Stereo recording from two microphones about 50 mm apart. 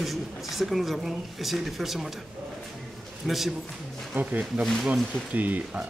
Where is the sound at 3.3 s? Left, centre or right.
Centre.